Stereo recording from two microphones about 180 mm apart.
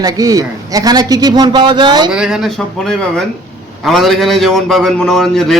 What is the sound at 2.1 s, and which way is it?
A man's voice, 5° right (ahead or behind).